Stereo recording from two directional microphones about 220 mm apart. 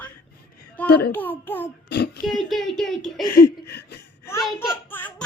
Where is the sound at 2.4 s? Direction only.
Centre (ahead or behind).